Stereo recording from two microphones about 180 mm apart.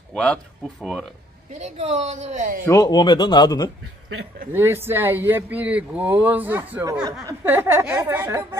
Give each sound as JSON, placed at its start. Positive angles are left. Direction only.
{"t": 0.1, "sound": "speech", "side_deg": 5}
{"t": 1.5, "sound": "a woman's voice", "side_deg": -40}
{"t": 2.6, "sound": "speech", "side_deg": 20}
{"t": 4.5, "sound": "speech", "side_deg": -15}
{"t": 6.8, "sound": "speech", "side_deg": -20}